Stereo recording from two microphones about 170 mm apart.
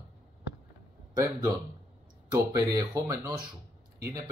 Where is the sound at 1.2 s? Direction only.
20° right (ahead or behind).